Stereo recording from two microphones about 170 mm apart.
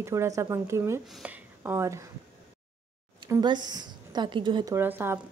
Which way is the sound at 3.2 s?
25° right (ahead or behind).